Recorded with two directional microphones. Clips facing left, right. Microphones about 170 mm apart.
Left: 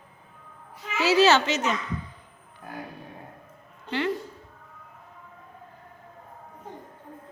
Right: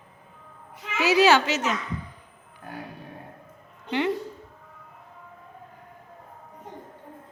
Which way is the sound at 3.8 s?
20° right (ahead or behind).